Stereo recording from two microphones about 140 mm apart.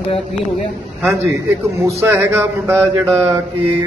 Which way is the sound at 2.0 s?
15° right (ahead or behind).